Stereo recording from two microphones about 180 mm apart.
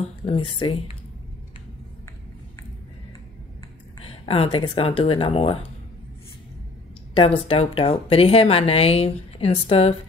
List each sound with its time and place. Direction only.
0.2 s speech: 30° left (ahead or behind)
4.0 s speech: 30° left (ahead or behind)
7.2 s speech: 30° left (ahead or behind)